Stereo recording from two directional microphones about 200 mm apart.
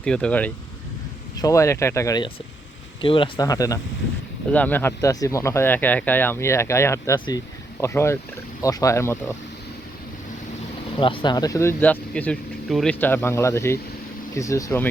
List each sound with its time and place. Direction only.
0.0 s speech: 5° left (ahead or behind)
10.9 s speech: 25° left (ahead or behind)